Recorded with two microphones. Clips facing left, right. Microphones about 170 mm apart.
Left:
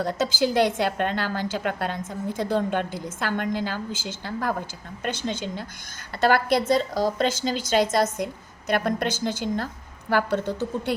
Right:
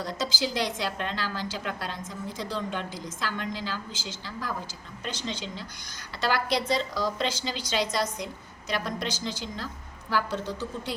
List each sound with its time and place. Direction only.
0.0 s a woman's voice: 55° left (ahead or behind)